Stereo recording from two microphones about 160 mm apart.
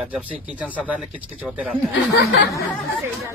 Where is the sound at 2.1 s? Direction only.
90° left.